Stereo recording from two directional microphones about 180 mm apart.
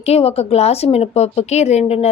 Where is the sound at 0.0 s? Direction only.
35° left (ahead or behind).